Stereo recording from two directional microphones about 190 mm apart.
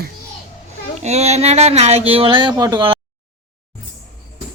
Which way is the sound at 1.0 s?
35° right (ahead or behind).